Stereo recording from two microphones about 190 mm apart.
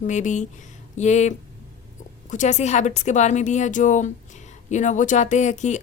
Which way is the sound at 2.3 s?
40° left (ahead or behind).